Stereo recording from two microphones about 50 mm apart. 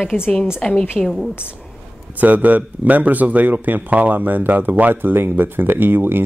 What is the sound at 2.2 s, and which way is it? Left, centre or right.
Speech, right.